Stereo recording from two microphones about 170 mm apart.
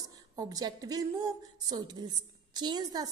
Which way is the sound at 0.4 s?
20° right (ahead or behind).